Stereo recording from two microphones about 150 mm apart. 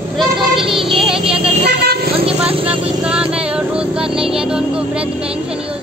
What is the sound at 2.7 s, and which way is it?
Music, 5° right (ahead or behind).